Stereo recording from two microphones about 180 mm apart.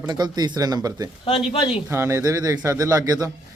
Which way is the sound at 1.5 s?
25° left (ahead or behind).